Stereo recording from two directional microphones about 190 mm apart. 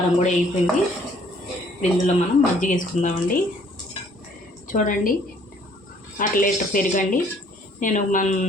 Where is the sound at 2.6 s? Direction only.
45° left (ahead or behind).